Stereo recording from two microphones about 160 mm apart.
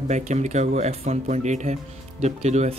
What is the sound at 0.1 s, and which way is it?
Speech, 45° right (ahead or behind).